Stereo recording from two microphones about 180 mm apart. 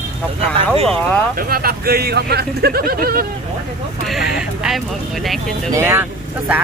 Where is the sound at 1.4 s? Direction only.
55° right (ahead or behind).